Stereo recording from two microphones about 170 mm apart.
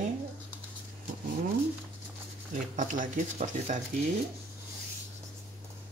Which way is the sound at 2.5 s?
50° right (ahead or behind).